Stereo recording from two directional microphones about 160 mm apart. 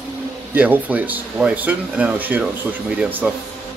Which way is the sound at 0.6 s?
10° right (ahead or behind).